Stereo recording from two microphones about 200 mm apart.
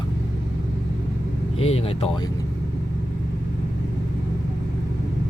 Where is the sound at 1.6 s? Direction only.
30° left (ahead or behind).